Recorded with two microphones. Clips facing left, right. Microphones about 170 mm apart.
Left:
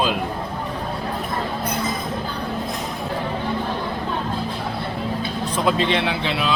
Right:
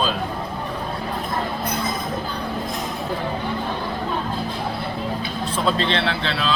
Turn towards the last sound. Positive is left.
turn(degrees=15)  # may be behind; listen again after turning